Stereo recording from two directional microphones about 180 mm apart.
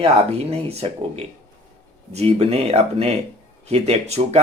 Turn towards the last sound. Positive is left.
turn(degrees=-35)  # may be behind; listen again after turning